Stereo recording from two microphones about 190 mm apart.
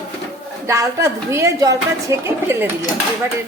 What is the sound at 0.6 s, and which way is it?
Speech, 15° right (ahead or behind).